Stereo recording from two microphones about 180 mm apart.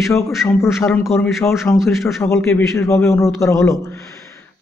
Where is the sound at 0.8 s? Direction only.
Centre (ahead or behind).